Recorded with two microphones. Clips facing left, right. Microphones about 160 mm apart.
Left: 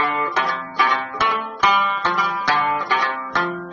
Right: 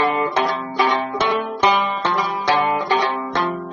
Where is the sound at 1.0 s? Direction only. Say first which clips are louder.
Right 4 dB; 30° right (ahead or behind).